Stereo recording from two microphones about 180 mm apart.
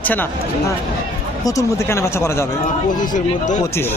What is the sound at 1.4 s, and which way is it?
Speech, 15° left (ahead or behind).